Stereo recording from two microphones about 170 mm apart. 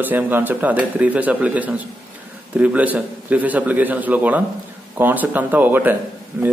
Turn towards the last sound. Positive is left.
turn(degrees=-10)  # may be behind; listen again after turning